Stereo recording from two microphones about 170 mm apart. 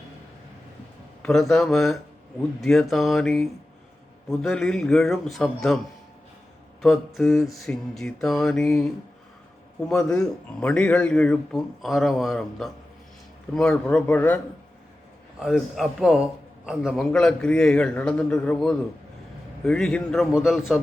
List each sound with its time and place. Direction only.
1.2 s a man's voice: centre (ahead or behind)
6.8 s a man's voice: centre (ahead or behind)
9.9 s a man's voice: 5° left (ahead or behind)
15.4 s a man's voice: 5° right (ahead or behind)